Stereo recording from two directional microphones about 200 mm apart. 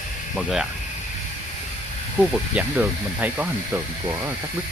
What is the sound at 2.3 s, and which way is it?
Speech, 5° right (ahead or behind).